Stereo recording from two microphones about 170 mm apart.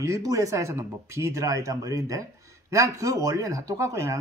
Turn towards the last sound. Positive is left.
turn(degrees=-20)  # may be behind; listen again after turning